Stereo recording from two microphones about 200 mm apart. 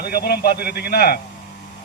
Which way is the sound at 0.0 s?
50° left (ahead or behind).